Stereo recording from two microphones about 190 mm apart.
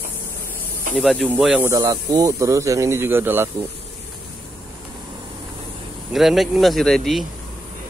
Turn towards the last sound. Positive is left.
turn(degrees=0)  # may be behind; listen again after turning